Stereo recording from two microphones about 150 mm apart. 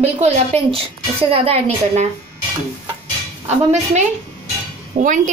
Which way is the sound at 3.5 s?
50° right (ahead or behind).